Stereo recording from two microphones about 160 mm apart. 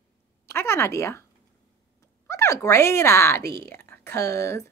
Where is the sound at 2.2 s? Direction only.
20° left (ahead or behind).